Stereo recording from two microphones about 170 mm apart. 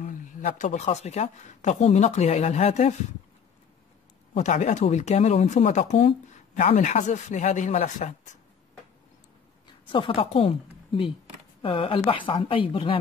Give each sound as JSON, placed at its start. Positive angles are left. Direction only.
{"t": 0.0, "sound": "speech", "side_deg": 45}
{"t": 4.3, "sound": "speech", "side_deg": 45}
{"t": 9.7, "sound": "a woman's voice", "side_deg": 30}